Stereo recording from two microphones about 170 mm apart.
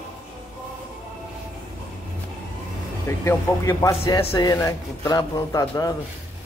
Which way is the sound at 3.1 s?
15° left (ahead or behind).